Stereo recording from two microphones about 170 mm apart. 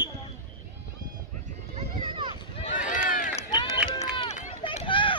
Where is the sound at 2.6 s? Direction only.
50° left (ahead or behind).